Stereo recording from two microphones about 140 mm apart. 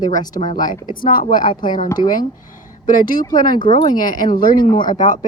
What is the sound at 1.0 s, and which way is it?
Speech, 80° left.